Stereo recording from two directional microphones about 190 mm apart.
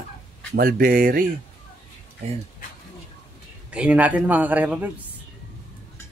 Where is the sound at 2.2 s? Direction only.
35° right (ahead or behind).